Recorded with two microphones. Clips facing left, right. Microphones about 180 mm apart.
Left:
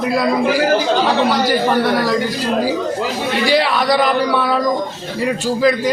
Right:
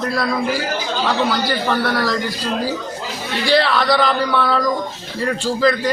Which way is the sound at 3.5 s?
15° left (ahead or behind).